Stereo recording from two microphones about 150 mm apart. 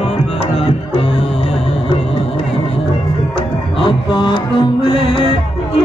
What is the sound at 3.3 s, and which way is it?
Music, 35° left (ahead or behind).